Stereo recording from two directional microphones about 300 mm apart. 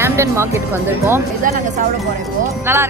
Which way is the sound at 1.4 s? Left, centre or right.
Right.